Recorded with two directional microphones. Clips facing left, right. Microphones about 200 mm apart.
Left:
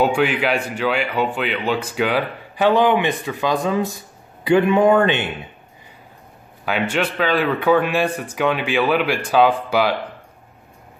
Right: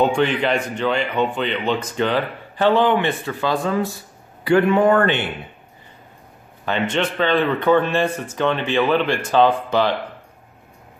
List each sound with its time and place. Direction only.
0.0 s a man's voice: 5° left (ahead or behind)
6.6 s a man's voice: 10° left (ahead or behind)